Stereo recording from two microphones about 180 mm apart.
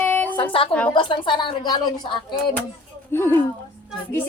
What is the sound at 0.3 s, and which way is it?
A child's voice, 30° left (ahead or behind).